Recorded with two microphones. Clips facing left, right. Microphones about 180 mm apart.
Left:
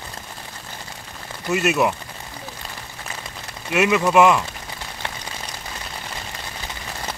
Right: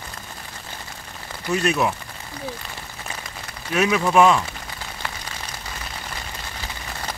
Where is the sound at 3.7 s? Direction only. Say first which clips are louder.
Left 1 dB; 5° left (ahead or behind).